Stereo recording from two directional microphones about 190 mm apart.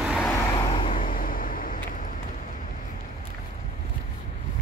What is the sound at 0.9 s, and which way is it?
Vehicle, 45° left (ahead or behind).